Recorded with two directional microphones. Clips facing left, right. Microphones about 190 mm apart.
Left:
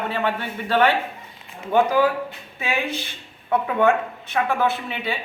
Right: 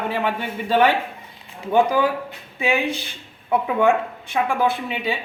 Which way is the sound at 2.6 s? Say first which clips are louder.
Right 4 dB; 15° right (ahead or behind).